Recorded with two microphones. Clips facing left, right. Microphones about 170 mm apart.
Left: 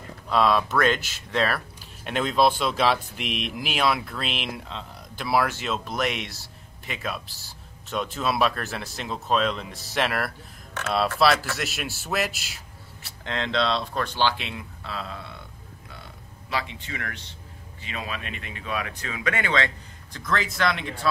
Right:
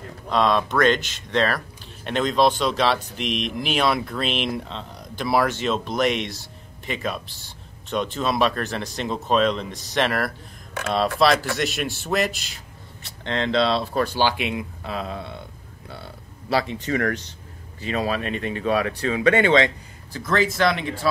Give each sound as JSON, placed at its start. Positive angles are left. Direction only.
{"t": 0.3, "sound": "speech", "side_deg": 5}
{"t": 10.8, "sound": "speech", "side_deg": -10}
{"t": 11.2, "sound": "speech", "side_deg": 5}
{"t": 15.9, "sound": "a sound", "side_deg": -35}
{"t": 17.8, "sound": "speech", "side_deg": -40}
{"t": 20.1, "sound": "speech", "side_deg": -5}